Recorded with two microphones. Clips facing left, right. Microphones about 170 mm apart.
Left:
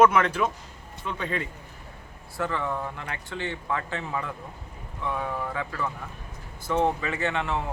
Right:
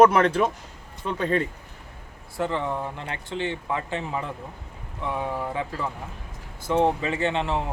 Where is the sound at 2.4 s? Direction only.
25° right (ahead or behind).